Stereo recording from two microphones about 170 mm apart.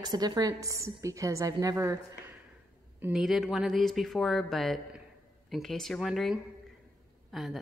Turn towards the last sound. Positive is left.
turn(degrees=0)  # may be behind; listen again after turning